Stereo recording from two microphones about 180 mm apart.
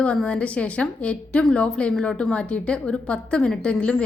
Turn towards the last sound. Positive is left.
turn(degrees=5)  # may be behind; listen again after turning